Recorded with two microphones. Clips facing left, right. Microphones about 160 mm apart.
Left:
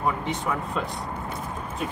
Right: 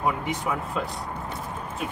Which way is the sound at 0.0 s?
10° right (ahead or behind).